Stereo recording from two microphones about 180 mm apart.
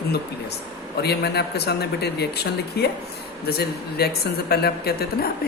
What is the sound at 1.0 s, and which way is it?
Speech, 65° left (ahead or behind).